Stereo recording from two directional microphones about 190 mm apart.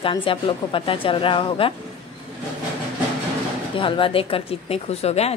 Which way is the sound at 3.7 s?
25° left (ahead or behind).